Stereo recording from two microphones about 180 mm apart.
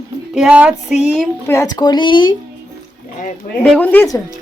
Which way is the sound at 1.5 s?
20° left (ahead or behind).